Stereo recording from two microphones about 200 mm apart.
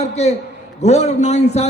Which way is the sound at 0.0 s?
35° left (ahead or behind).